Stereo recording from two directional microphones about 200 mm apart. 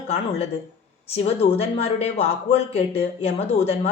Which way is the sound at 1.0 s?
30° left (ahead or behind).